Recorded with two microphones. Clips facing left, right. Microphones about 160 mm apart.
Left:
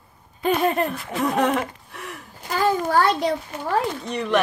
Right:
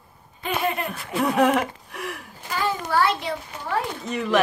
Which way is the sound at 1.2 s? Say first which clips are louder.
Right 2 dB; 5° right (ahead or behind).